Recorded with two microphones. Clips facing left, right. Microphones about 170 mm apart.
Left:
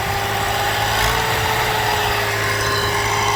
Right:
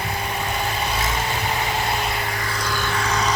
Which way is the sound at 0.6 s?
70° left (ahead or behind).